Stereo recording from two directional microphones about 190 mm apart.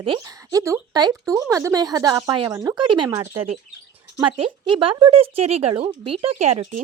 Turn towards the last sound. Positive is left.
turn(degrees=-35)  # may be behind; listen again after turning